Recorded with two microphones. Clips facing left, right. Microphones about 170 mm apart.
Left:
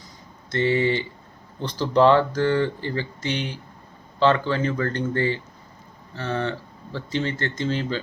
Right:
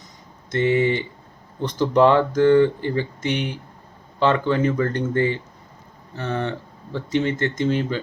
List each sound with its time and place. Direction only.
0.5 s speech: 15° right (ahead or behind)